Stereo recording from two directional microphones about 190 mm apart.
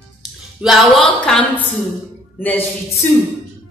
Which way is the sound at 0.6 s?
Centre (ahead or behind).